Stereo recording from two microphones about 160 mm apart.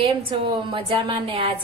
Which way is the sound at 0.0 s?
30° right (ahead or behind).